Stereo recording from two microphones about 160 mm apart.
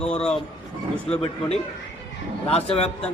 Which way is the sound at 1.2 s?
40° left (ahead or behind).